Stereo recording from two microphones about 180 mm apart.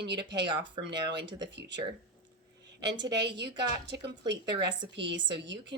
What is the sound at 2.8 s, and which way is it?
A woman's voice, 70° right (ahead or behind).